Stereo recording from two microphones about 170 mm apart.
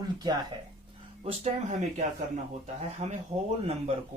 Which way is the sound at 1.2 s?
45° right (ahead or behind).